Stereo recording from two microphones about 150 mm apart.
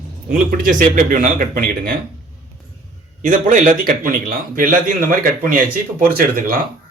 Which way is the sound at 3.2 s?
60° right (ahead or behind).